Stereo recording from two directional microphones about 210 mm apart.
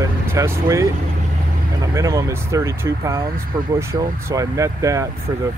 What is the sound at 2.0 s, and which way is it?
Speech, 15° right (ahead or behind).